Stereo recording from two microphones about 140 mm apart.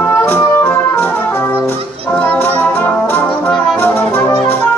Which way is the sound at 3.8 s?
15° left (ahead or behind).